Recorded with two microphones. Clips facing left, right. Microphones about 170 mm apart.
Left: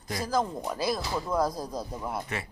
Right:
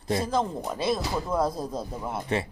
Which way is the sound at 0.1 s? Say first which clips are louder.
Right 3 dB; 25° right (ahead or behind).